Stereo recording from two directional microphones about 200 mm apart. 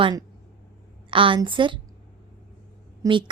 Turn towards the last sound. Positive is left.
turn(degrees=-25)  # may be behind; listen again after turning